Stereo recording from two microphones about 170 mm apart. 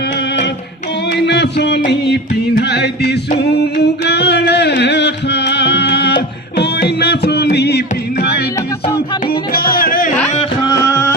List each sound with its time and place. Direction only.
1.1 s music: 85° left
9.7 s music: 55° left (ahead or behind)
10.7 s music: 15° left (ahead or behind)